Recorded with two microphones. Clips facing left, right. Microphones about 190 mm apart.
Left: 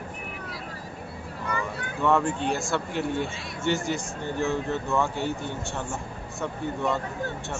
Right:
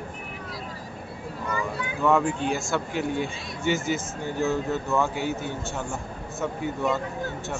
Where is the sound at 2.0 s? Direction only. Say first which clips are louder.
Right 1 dB; centre (ahead or behind).